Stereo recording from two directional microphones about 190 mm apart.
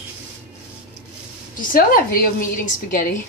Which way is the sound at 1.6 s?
50° left (ahead or behind).